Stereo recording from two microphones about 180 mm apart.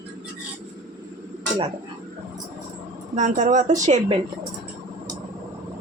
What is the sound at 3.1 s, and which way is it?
Speech, 45° right (ahead or behind).